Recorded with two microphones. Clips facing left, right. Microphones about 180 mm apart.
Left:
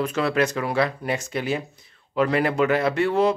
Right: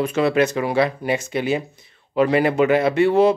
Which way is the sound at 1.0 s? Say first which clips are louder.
Right 4 dB; centre (ahead or behind).